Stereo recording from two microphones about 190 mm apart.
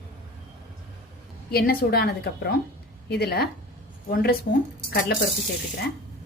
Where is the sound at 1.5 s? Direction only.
55° left (ahead or behind).